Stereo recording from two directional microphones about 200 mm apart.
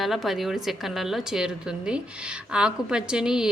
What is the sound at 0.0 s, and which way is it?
A woman's voice, centre (ahead or behind).